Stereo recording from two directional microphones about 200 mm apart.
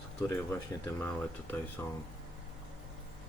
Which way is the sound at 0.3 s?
10° left (ahead or behind).